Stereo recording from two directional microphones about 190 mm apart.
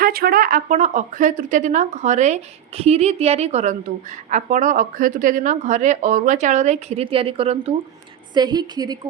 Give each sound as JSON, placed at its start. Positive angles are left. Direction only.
{"t": 0.0, "sound": "a woman's voice", "side_deg": -50}